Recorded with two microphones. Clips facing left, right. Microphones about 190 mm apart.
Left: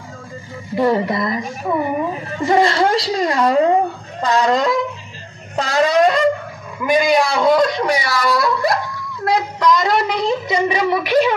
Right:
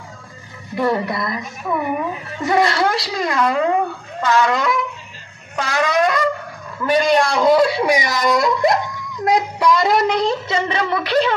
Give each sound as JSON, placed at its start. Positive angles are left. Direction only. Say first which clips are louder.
{"t": 0.7, "sound": "a woman's voice", "louder": "left 3 dB", "side_deg": 25}
{"t": 6.8, "sound": "speech", "louder": "left 1 dB", "side_deg": 10}